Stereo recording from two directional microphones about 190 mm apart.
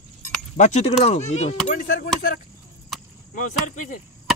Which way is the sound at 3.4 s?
40° left (ahead or behind).